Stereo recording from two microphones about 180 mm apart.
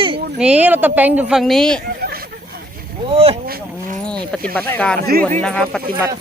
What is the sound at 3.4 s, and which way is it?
Livestock, 55° right (ahead or behind).